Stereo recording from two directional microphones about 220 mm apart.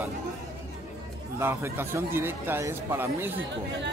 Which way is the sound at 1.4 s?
10° right (ahead or behind).